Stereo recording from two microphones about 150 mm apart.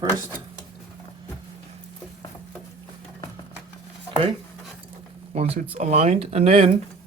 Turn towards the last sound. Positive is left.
turn(degrees=-45)  # may be behind; listen again after turning